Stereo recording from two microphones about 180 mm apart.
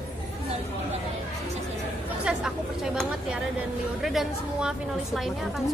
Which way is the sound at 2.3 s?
5° right (ahead or behind).